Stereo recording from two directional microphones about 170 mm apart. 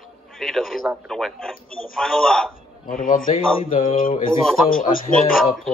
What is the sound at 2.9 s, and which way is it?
A man's voice, 55° left (ahead or behind).